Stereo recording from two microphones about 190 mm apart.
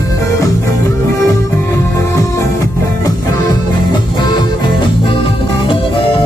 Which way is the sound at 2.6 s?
20° left (ahead or behind).